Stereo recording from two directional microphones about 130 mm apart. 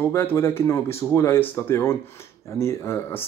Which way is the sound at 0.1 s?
15° left (ahead or behind).